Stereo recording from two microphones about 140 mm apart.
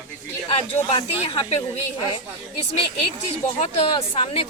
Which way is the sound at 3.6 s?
45° left (ahead or behind).